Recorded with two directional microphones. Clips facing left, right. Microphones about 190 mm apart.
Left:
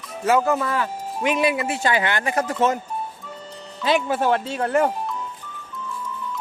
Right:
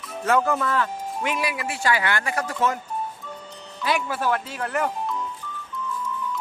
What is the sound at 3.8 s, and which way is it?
Speech, 25° left (ahead or behind).